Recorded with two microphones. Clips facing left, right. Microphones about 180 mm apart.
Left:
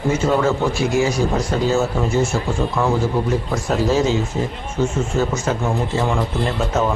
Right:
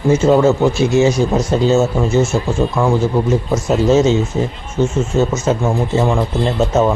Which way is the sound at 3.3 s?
25° right (ahead or behind).